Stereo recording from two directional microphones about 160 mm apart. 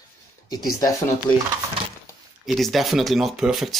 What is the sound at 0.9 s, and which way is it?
Speech, 15° left (ahead or behind).